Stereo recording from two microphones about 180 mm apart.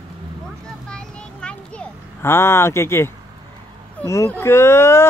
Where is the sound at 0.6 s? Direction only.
5° left (ahead or behind).